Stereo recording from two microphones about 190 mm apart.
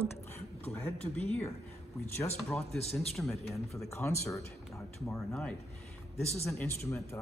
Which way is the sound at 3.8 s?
15° left (ahead or behind).